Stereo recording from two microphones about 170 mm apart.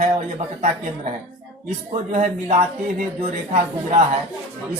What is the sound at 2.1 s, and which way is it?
A woman's voice, 45° right (ahead or behind).